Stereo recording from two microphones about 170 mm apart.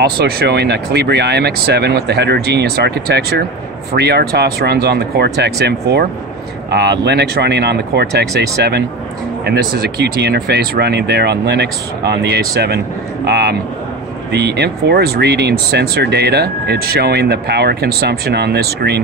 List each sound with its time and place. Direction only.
0.0 s speech: 75° right (ahead or behind)